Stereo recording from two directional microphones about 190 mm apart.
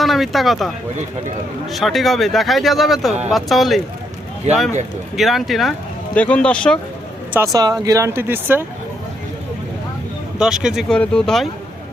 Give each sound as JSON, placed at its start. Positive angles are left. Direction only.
{"t": 0.0, "sound": "speech", "side_deg": 0}
{"t": 1.7, "sound": "speech", "side_deg": 0}
{"t": 5.1, "sound": "speech", "side_deg": 0}
{"t": 7.3, "sound": "speech", "side_deg": -20}
{"t": 10.3, "sound": "speech", "side_deg": -5}